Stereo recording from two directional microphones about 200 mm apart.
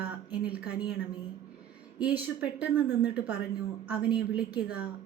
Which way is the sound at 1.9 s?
5° right (ahead or behind).